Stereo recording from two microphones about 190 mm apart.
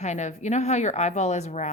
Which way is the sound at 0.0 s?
40° left (ahead or behind).